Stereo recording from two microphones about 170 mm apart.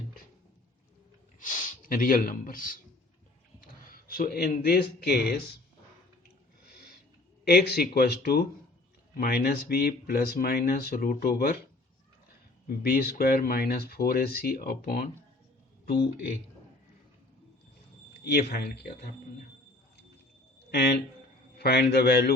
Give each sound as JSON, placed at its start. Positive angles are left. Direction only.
{"t": 1.4, "sound": "speech", "side_deg": 55}
{"t": 3.9, "sound": "speech", "side_deg": 60}
{"t": 7.4, "sound": "speech", "side_deg": 70}
{"t": 12.6, "sound": "speech", "side_deg": 65}
{"t": 18.2, "sound": "speech", "side_deg": 70}
{"t": 20.7, "sound": "speech", "side_deg": 70}